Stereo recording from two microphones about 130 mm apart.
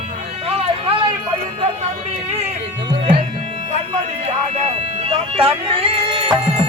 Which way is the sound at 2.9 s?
45° right (ahead or behind).